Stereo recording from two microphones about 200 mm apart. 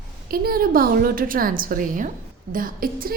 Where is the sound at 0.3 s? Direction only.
50° right (ahead or behind).